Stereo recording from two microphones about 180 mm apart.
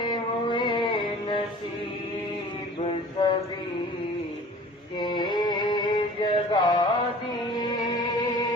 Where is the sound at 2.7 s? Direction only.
30° left (ahead or behind).